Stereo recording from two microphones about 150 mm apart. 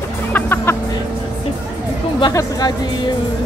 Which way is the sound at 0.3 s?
15° left (ahead or behind).